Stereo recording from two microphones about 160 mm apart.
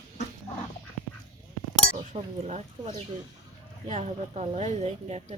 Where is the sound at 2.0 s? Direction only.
45° right (ahead or behind).